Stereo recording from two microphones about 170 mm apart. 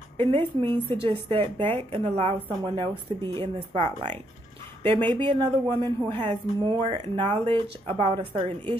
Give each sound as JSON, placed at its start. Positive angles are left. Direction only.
{"t": 0.2, "sound": "a woman's voice", "side_deg": -35}